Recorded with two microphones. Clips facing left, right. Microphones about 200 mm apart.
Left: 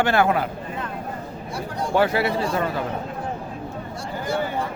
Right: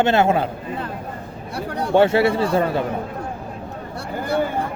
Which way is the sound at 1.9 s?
30° right (ahead or behind).